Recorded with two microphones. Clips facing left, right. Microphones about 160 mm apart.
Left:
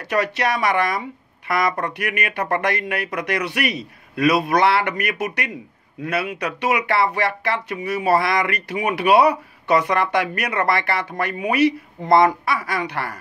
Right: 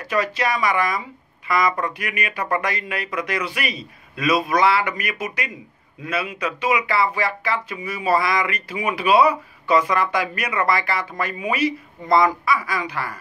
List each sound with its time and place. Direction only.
0.0 s speech: 65° left (ahead or behind)